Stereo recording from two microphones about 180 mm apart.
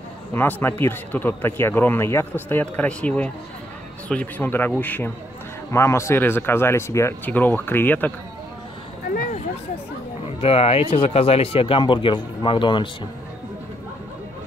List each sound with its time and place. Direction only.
0.3 s speech: 10° left (ahead or behind)
9.0 s a sound: 55° left (ahead or behind)
10.4 s speech: 30° left (ahead or behind)